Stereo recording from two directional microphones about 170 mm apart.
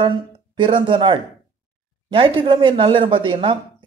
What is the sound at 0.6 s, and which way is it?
A man's voice, 30° right (ahead or behind).